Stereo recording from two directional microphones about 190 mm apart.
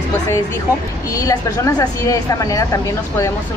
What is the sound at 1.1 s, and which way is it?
A woman's voice, 15° left (ahead or behind).